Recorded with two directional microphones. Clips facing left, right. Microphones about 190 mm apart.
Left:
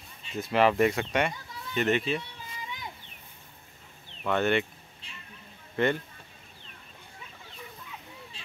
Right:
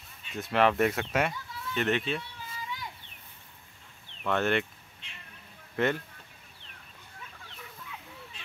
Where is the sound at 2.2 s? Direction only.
20° left (ahead or behind).